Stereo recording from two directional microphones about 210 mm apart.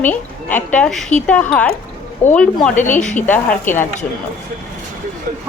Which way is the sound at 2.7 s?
35° left (ahead or behind).